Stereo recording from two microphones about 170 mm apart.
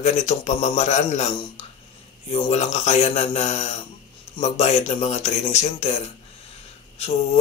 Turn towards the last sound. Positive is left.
turn(degrees=35)  # may be behind; listen again after turning